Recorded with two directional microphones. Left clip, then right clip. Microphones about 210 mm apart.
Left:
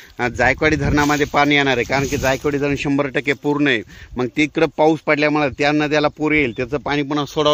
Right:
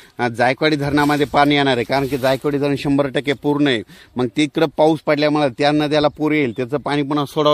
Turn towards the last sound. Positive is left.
turn(degrees=-55)  # may be behind; listen again after turning